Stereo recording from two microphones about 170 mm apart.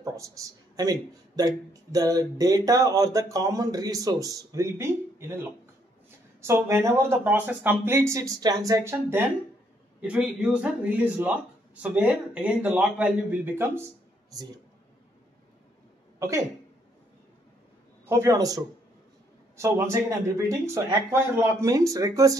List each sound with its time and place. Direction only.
0.0 s a sound: 20° right (ahead or behind)
1.3 s speech: 20° right (ahead or behind)
16.2 s speech: 20° right (ahead or behind)
18.0 s speech: 15° right (ahead or behind)